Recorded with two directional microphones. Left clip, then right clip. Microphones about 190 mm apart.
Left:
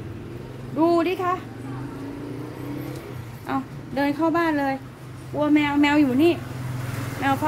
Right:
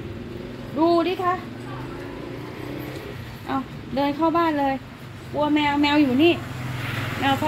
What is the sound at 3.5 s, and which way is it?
Speech, centre (ahead or behind).